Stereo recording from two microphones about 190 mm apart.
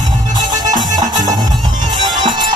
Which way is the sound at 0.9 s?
20° right (ahead or behind).